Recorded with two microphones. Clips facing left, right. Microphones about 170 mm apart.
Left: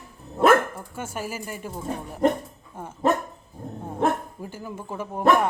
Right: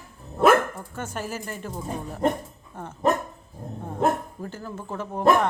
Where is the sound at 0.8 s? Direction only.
10° left (ahead or behind).